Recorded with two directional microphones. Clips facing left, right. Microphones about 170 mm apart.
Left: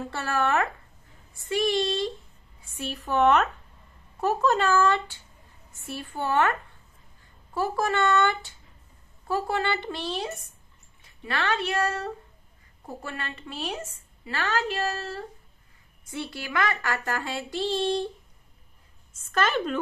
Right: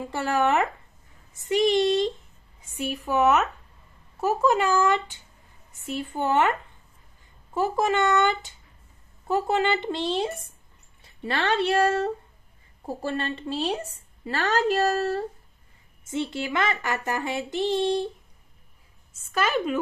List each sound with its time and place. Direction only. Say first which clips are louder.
0.0 s a child's voice: right 3 dB; 15° right (ahead or behind)
7.5 s a woman's voice: right 3 dB; 20° right (ahead or behind); by 15.2 s 40° right (ahead or behind)
16.1 s speech: right 6 dB; 20° right (ahead or behind)
19.3 s speech: right 1 dB; 10° right (ahead or behind)